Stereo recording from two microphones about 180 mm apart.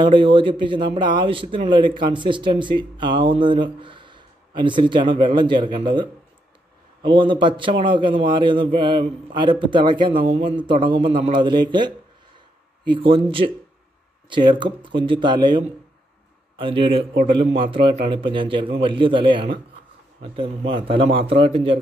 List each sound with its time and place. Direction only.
0.0 s speech: 25° right (ahead or behind)